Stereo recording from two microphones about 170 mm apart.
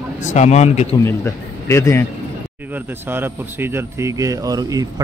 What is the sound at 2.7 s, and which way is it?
A man's voice, 15° right (ahead or behind).